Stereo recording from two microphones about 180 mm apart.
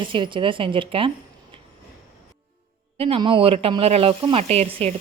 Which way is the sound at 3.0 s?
30° right (ahead or behind).